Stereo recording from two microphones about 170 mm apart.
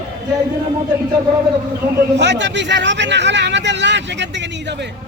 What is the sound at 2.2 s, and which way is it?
Speech, 90° right.